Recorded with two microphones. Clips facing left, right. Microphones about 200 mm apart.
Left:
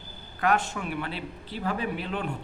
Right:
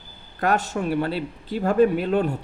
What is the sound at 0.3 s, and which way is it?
Speech, 40° right (ahead or behind).